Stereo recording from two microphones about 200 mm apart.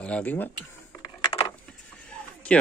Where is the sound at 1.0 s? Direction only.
20° left (ahead or behind).